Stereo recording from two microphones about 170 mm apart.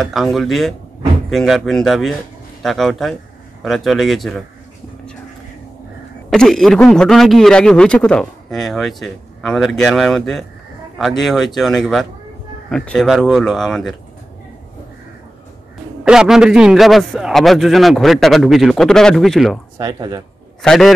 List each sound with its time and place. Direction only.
0.0 s a man's voice: centre (ahead or behind)
6.3 s a man's voice: centre (ahead or behind)
16.0 s a man's voice: 5° right (ahead or behind)
19.8 s speech: 20° right (ahead or behind)
20.6 s a man's voice: centre (ahead or behind)